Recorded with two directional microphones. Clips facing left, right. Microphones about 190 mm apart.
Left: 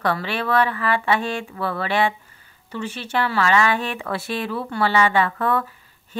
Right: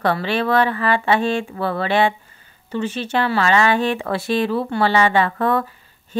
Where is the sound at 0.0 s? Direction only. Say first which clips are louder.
Right 4 dB; 30° right (ahead or behind).